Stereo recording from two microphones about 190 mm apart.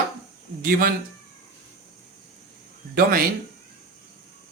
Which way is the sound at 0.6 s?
50° right (ahead or behind).